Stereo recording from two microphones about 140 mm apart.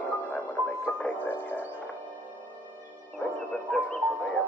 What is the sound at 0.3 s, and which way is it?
Music, 10° left (ahead or behind).